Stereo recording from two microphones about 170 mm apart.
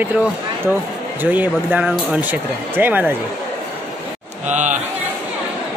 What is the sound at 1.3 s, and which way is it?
Speech, 10° right (ahead or behind).